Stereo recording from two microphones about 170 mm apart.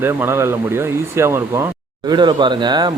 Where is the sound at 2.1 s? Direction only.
25° right (ahead or behind).